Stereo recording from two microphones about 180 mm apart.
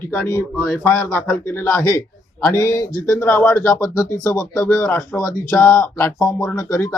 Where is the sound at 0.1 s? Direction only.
15° left (ahead or behind).